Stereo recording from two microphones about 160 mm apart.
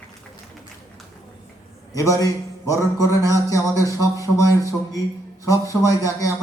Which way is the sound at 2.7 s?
20° left (ahead or behind).